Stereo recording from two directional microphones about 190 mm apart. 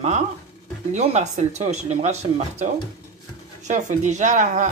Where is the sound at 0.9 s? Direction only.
35° right (ahead or behind).